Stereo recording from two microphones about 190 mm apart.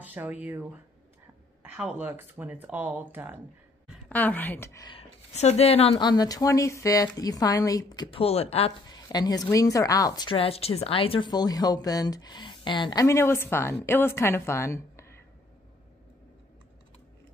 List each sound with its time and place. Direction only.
0.0 s speech: 10° right (ahead or behind)
4.1 s a woman's voice: 10° left (ahead or behind)
4.9 s a woman's voice: 35° left (ahead or behind)
8.8 s a woman's voice: 20° left (ahead or behind)